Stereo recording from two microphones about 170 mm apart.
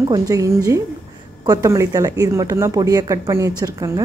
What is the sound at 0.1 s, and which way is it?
A woman's voice, 20° right (ahead or behind).